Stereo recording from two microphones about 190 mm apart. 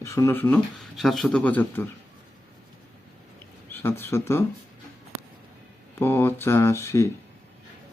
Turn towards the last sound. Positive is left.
turn(degrees=15)  # may be behind; listen again after turning